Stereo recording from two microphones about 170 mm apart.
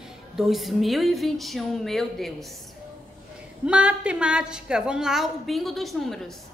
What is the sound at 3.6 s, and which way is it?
A woman's voice, 5° right (ahead or behind).